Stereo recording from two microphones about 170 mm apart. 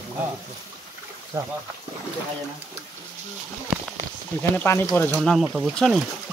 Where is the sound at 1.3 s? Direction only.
15° right (ahead or behind).